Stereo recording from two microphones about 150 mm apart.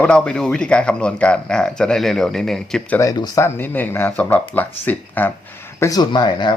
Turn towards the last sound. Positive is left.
turn(degrees=30)  # may be behind; listen again after turning